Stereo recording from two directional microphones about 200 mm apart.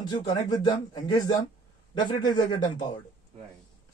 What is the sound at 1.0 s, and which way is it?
Speech, 20° left (ahead or behind).